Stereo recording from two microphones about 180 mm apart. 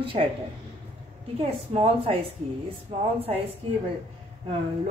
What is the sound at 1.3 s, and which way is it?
Speech, 30° right (ahead or behind).